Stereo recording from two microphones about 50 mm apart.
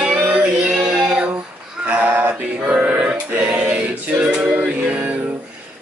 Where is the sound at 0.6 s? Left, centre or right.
Centre.